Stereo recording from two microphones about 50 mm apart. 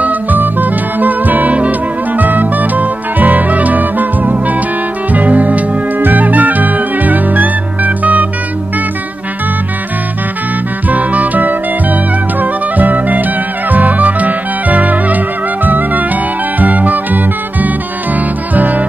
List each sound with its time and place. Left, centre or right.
0.0 s music: right
10.9 s music: right